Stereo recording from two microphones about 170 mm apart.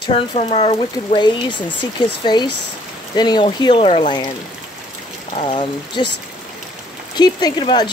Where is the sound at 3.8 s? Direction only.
40° left (ahead or behind).